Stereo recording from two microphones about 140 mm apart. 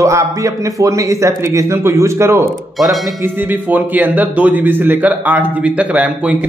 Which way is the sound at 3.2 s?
15° right (ahead or behind).